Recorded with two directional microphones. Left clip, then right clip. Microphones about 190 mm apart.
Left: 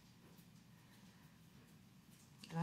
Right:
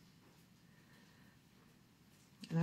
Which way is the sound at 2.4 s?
45° left (ahead or behind).